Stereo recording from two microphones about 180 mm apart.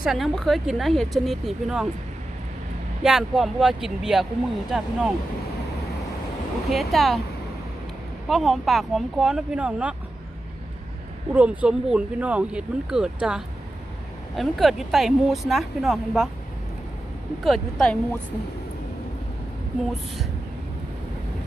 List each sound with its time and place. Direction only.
0.0 s speech: centre (ahead or behind)
3.0 s speech: 5° right (ahead or behind)
6.7 s speech: centre (ahead or behind)
8.3 s speech: centre (ahead or behind)
11.3 s speech: 5° right (ahead or behind)
17.4 s speech: centre (ahead or behind)